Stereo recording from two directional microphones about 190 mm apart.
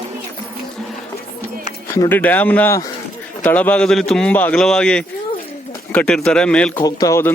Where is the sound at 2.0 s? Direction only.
10° left (ahead or behind).